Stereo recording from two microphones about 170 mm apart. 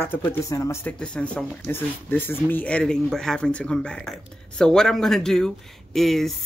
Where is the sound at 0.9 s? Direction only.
5° left (ahead or behind).